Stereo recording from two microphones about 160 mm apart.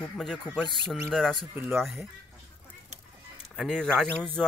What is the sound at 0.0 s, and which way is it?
Speech, 5° left (ahead or behind).